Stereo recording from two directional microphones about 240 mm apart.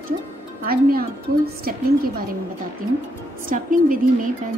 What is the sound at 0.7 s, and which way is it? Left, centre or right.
A woman's voice, right.